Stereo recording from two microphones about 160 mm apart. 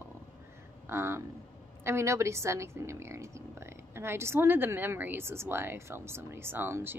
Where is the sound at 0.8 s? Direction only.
15° right (ahead or behind).